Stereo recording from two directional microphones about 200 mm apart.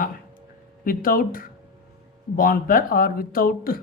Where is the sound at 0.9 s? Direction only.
45° left (ahead or behind).